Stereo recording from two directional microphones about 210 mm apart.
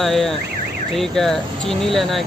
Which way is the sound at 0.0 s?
Centre (ahead or behind).